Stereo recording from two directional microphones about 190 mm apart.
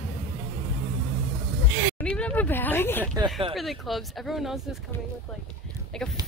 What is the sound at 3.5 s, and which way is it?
Speech, centre (ahead or behind).